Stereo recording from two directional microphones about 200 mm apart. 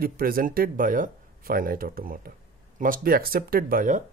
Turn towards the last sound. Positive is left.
turn(degrees=-40)  # may be behind; listen again after turning